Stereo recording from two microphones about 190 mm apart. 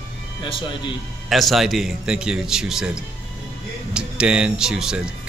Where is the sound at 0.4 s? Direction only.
25° left (ahead or behind).